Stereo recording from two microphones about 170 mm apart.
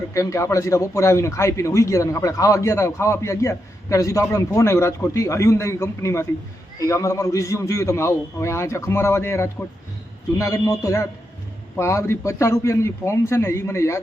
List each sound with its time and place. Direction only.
0.1 s a man's voice: 20° left (ahead or behind)